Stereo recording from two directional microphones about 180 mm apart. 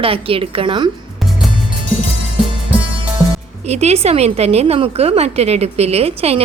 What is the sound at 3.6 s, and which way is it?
A woman's voice, 35° right (ahead or behind).